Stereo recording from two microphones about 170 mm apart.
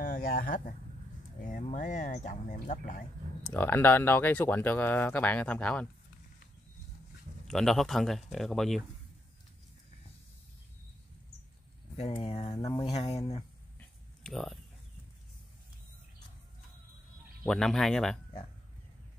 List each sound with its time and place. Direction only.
0.0 s a sound: 55° left (ahead or behind)
1.5 s speech: 45° left (ahead or behind)
3.4 s speech: 10° left (ahead or behind)
7.4 s speech: centre (ahead or behind)
12.1 s speech: 35° left (ahead or behind)
13.7 s a sound: 5° left (ahead or behind)
17.5 s speech: 5° left (ahead or behind)